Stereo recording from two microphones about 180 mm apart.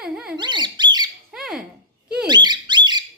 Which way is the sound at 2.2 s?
25° right (ahead or behind).